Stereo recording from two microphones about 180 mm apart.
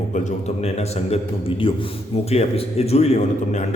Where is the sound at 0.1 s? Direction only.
40° left (ahead or behind).